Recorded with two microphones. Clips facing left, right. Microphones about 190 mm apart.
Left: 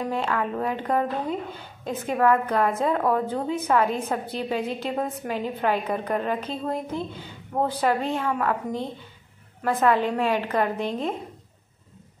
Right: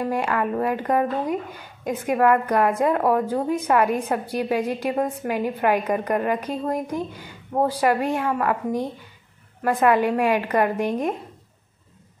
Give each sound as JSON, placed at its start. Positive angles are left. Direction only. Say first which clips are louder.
{"t": 0.0, "sound": "a woman's voice", "louder": "right 3 dB", "side_deg": -10}